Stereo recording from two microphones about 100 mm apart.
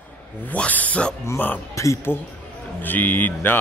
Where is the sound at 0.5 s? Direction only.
15° left (ahead or behind).